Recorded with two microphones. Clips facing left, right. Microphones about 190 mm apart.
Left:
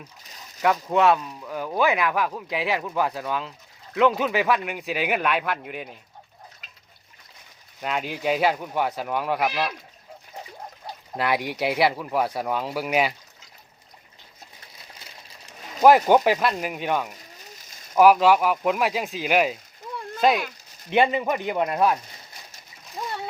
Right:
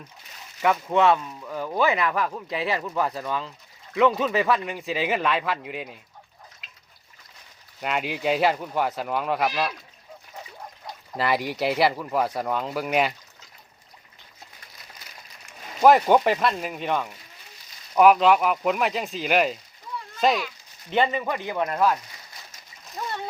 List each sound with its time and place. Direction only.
0.6 s speech: centre (ahead or behind)
7.8 s speech: centre (ahead or behind)
11.2 s speech: centre (ahead or behind)
15.8 s speech: 5° left (ahead or behind)
20.9 s speech: 15° left (ahead or behind)
23.0 s splash: 10° left (ahead or behind)